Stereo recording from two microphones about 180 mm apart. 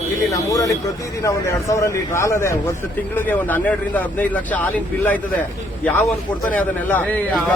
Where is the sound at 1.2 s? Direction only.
15° left (ahead or behind).